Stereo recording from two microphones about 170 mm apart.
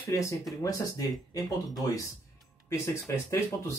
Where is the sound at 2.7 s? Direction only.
15° left (ahead or behind).